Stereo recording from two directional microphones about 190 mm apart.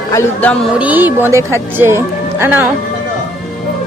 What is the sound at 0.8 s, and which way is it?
Speech, 10° right (ahead or behind).